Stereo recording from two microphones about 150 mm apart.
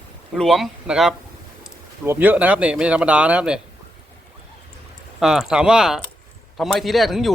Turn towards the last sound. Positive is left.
turn(degrees=0)  # may be behind; listen again after turning